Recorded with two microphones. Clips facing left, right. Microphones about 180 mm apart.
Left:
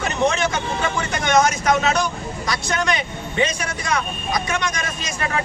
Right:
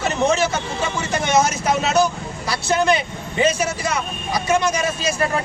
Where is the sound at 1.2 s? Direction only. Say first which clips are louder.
Left 1 dB; 5° right (ahead or behind).